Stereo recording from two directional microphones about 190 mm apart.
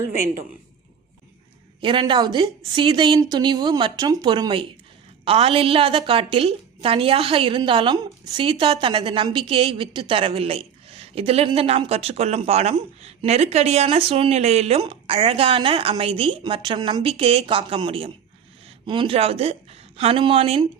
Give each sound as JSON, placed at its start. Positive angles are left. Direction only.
{"t": 1.8, "sound": "a woman's voice", "side_deg": -25}